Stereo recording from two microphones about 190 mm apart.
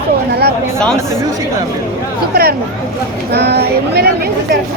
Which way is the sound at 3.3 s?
60° right (ahead or behind).